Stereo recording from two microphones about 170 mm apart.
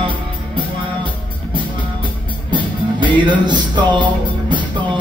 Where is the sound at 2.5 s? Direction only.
30° right (ahead or behind).